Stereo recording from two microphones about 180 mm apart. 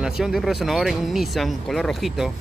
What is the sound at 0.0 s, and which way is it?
Speech, centre (ahead or behind).